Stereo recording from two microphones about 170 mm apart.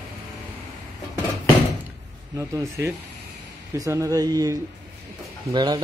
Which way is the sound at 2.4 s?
15° right (ahead or behind).